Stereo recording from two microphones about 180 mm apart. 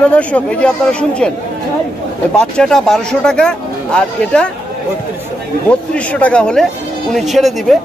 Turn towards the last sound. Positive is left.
turn(degrees=0)  # may be behind; listen again after turning